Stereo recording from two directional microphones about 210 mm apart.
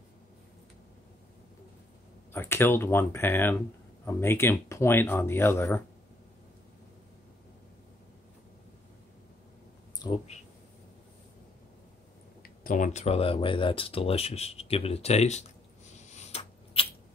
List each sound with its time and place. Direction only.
2.3 s speech: 10° left (ahead or behind)
10.0 s speech: 15° left (ahead or behind)
12.6 s speech: 35° left (ahead or behind)
16.1 s a sound: 30° left (ahead or behind)